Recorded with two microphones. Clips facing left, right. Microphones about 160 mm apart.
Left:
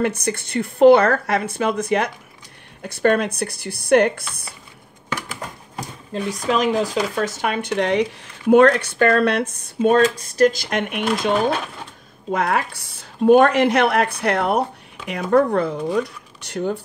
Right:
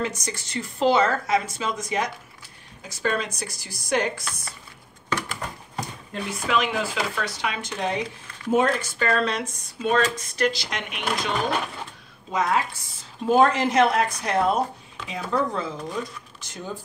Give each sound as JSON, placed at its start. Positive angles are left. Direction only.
{"t": 0.0, "sound": "speech", "side_deg": 60}
{"t": 6.4, "sound": "speech", "side_deg": 40}
{"t": 12.3, "sound": "speech", "side_deg": 60}